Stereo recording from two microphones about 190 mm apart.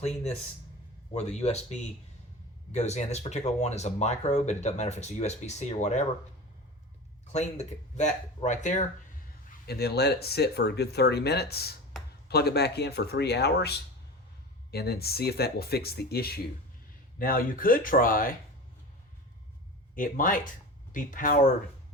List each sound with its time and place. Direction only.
0.0 s speech: 35° left (ahead or behind)
7.3 s speech: 35° left (ahead or behind)
9.6 s speech: 55° left (ahead or behind)
20.0 s speech: 45° left (ahead or behind)